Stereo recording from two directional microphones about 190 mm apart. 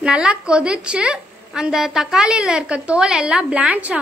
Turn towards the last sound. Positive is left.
turn(degrees=-5)  # may be behind; listen again after turning